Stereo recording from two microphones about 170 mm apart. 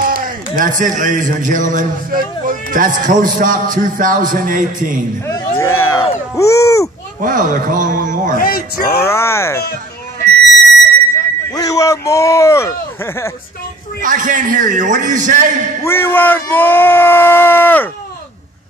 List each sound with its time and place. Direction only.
0.0 s a man's voice: 55° right (ahead or behind)
5.2 s speech: 15° left (ahead or behind)
7.2 s a man's voice: 50° right (ahead or behind)
8.4 s speech: 60° left (ahead or behind)
9.1 s speech: 15° left (ahead or behind)
11.5 s speech: 20° left (ahead or behind)
14.0 s a man's voice: 50° right (ahead or behind)
15.8 s speech: 15° left (ahead or behind)